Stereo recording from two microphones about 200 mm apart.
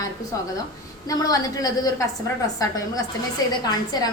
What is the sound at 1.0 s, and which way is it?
Speech, 15° left (ahead or behind).